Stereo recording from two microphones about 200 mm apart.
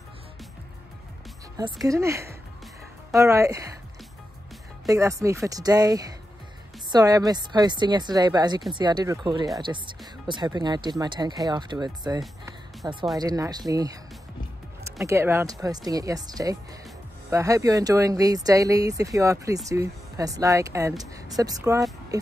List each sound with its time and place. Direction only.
1.6 s speech: 15° right (ahead or behind)
4.8 s speech: 15° right (ahead or behind)
15.0 s speech: 15° right (ahead or behind)